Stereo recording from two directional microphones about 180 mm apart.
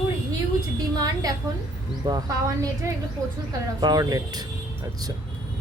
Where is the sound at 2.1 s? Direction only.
20° right (ahead or behind).